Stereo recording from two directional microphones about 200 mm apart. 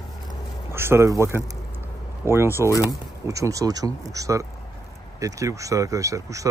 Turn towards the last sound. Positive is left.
turn(degrees=-15)  # may be behind; listen again after turning